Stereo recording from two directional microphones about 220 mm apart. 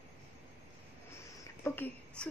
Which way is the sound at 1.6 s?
10° left (ahead or behind).